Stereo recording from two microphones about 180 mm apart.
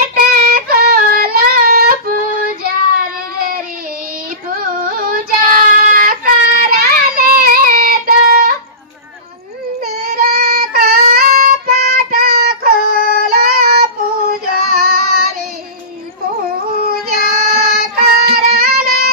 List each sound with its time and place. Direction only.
0.0 s child singing: 55° right (ahead or behind)
4.5 s child singing: 50° right (ahead or behind)
10.1 s child singing: 55° right (ahead or behind)
16.9 s child singing: 55° right (ahead or behind)